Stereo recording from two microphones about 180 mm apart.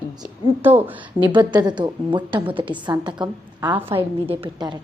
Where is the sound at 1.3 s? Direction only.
25° right (ahead or behind).